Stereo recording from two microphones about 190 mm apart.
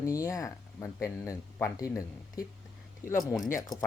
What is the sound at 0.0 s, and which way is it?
Speech, 15° left (ahead or behind).